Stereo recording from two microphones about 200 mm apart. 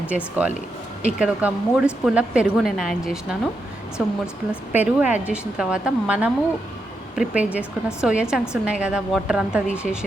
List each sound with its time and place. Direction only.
0.4 s a woman's voice: 5° right (ahead or behind)
4.7 s a woman's voice: 5° right (ahead or behind)